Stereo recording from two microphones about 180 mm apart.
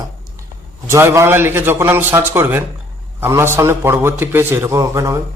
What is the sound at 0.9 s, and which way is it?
A man's voice, 15° right (ahead or behind).